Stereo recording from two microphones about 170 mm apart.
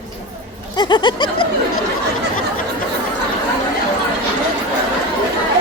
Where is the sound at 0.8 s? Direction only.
25° left (ahead or behind).